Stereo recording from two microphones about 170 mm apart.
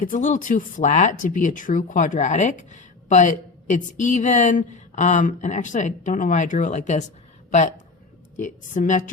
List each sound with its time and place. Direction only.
0.0 s speech: 50° left (ahead or behind)
8.4 s speech: 50° left (ahead or behind)